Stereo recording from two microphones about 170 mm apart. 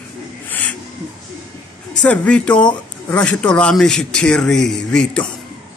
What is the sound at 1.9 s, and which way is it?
A man's voice, 5° left (ahead or behind).